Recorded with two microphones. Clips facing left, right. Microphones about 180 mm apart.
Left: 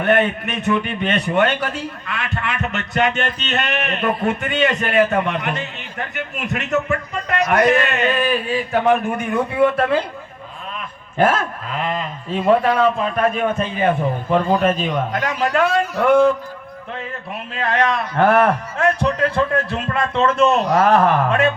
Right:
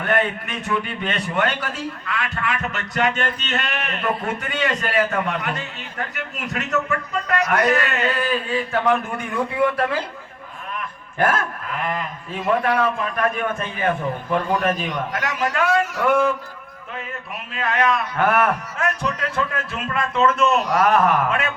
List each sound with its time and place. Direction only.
0.0 s a man's voice: 25° left (ahead or behind)
11.2 s a man's voice: 25° left (ahead or behind)
14.8 s a man's voice: 90° right
15.5 s a man's voice: 30° left (ahead or behind)
17.5 s a man's voice: 35° left (ahead or behind)